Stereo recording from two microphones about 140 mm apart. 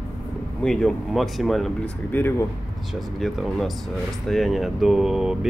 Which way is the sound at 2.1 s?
15° left (ahead or behind).